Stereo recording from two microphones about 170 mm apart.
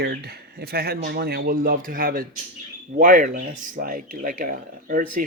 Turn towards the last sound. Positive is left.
turn(degrees=-55)  # may be behind; listen again after turning